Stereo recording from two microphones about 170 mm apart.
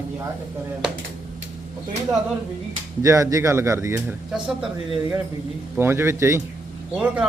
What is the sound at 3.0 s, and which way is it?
A man's voice, 20° right (ahead or behind).